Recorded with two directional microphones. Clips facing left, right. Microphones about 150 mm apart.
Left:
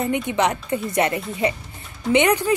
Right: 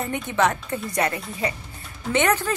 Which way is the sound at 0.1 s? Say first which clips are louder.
Left 2 dB; 15° left (ahead or behind).